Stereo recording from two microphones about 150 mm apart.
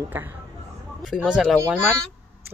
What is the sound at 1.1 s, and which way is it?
Speech, 5° right (ahead or behind).